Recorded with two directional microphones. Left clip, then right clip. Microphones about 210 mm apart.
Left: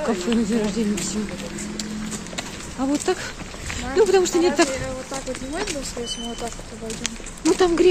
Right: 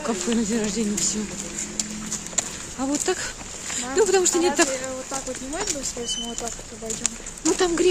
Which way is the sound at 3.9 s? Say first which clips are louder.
Left 3 dB; 10° right (ahead or behind).